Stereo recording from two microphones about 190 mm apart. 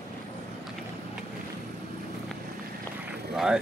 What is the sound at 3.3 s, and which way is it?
Vehicle, 5° right (ahead or behind).